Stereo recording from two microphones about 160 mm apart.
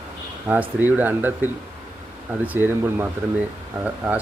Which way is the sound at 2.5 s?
15° right (ahead or behind).